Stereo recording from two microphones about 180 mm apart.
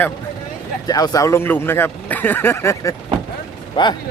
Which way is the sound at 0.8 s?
20° left (ahead or behind).